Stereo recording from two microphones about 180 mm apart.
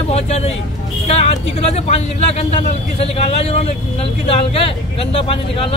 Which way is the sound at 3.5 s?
35° left (ahead or behind).